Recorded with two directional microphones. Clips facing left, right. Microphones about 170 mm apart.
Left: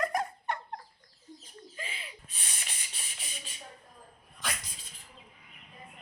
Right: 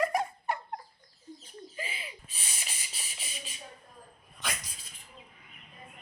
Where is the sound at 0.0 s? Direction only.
5° right (ahead or behind).